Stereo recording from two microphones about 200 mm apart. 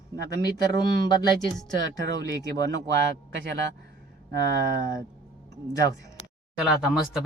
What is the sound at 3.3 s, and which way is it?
Speech, 65° right (ahead or behind).